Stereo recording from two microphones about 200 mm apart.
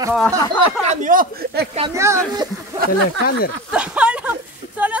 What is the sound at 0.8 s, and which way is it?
Speech, 45° right (ahead or behind).